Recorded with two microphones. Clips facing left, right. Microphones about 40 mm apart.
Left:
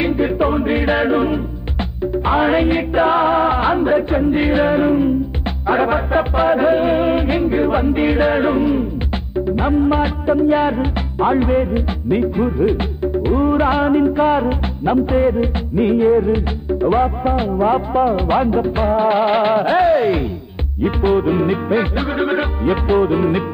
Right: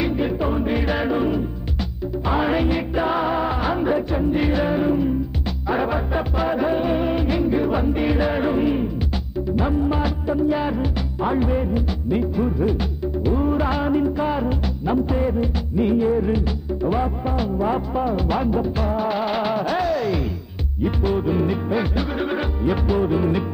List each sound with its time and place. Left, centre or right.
0.2 s music: left
8.5 s music: centre
9.6 s music: left